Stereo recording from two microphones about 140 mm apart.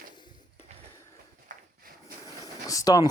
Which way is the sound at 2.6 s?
25° left (ahead or behind).